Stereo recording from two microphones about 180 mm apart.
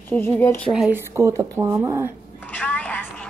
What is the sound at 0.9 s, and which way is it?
Speech, 15° right (ahead or behind).